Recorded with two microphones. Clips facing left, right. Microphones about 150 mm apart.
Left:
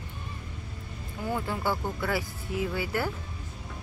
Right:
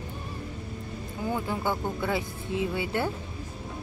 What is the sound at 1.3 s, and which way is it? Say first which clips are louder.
Speech: even; 15° right (ahead or behind).